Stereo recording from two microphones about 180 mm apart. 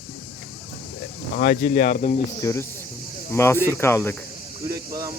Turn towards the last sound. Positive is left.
turn(degrees=-20)  # may be behind; listen again after turning